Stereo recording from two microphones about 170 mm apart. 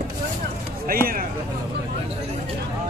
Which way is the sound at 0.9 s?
60° right (ahead or behind).